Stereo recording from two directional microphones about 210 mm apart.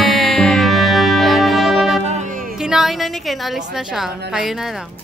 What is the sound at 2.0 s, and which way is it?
Music, 35° right (ahead or behind).